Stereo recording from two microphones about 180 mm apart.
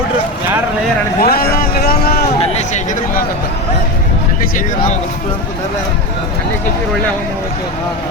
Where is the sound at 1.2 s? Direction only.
60° left (ahead or behind).